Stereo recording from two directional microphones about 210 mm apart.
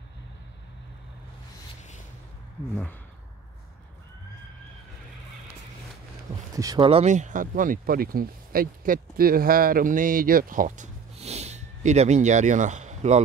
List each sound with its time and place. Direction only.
2.7 s speech: 10° left (ahead or behind)
6.5 s speech: 15° right (ahead or behind); by 13.2 s 35° right (ahead or behind)